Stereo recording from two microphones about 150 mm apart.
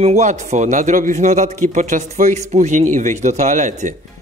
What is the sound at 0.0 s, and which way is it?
Speech, 50° right (ahead or behind).